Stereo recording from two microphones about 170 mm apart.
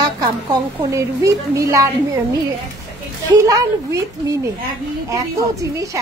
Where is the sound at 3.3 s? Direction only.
20° right (ahead or behind).